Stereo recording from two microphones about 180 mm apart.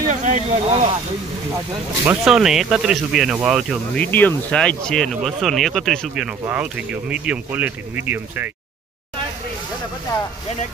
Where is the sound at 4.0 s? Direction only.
10° left (ahead or behind); by 8.5 s 10° right (ahead or behind).